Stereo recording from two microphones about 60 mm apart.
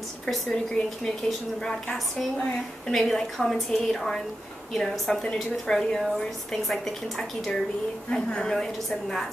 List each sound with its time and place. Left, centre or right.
0.8 s a woman's voice: centre
2.9 s a woman's voice: centre